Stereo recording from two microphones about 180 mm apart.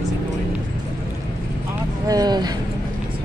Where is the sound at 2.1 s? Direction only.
20° right (ahead or behind).